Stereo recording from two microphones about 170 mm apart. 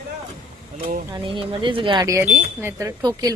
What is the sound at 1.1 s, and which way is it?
Speech, 30° right (ahead or behind).